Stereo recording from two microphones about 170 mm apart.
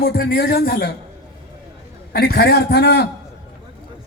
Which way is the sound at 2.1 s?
70° left (ahead or behind).